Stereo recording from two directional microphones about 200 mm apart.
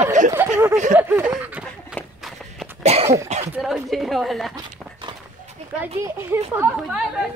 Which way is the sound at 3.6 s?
Centre (ahead or behind).